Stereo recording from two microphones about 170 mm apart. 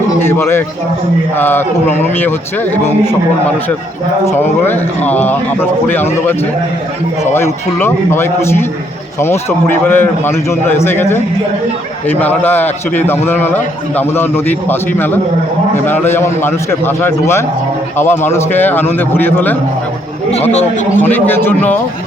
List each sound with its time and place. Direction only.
0.2 s a man's voice: 15° left (ahead or behind)
7.3 s a man's voice: 15° left (ahead or behind)
21.0 s a man's voice: 10° left (ahead or behind)